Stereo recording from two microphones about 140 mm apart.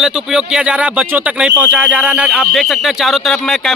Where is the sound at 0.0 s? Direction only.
5° right (ahead or behind).